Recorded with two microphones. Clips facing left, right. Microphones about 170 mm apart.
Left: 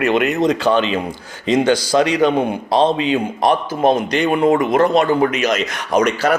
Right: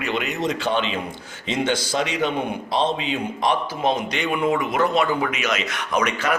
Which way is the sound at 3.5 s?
50° left (ahead or behind).